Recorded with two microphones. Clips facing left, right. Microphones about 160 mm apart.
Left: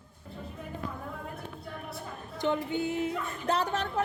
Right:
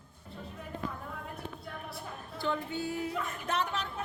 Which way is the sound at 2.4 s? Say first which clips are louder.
Left 5 dB; 20° left (ahead or behind).